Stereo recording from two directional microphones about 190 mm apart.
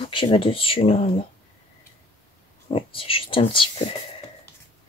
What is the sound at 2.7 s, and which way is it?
Speech, 30° left (ahead or behind).